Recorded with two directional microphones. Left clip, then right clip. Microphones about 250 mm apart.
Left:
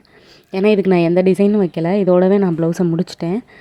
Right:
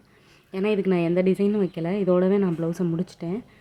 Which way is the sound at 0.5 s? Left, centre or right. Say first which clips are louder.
Left 10 dB; left.